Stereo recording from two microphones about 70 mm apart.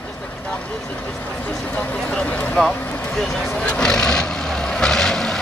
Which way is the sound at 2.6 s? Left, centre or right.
Centre.